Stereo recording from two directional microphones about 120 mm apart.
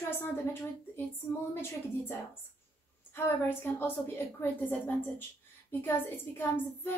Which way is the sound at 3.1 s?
20° left (ahead or behind).